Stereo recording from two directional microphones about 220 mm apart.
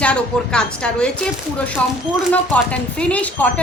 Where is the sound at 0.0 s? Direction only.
5° left (ahead or behind).